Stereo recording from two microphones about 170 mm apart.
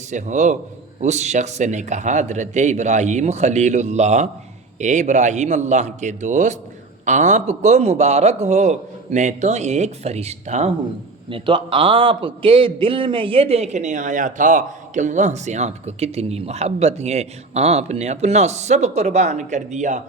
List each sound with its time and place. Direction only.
0.1 s a man's voice: 45° right (ahead or behind)
11.3 s a man's voice: 30° right (ahead or behind); by 20.0 s 45° right (ahead or behind)